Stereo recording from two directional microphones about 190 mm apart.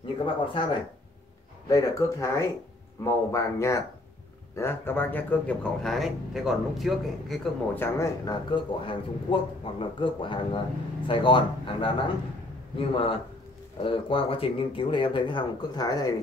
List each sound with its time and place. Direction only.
0.0 s speech: 25° left (ahead or behind); by 7.3 s centre (ahead or behind)
7.7 s a man's voice: 15° left (ahead or behind)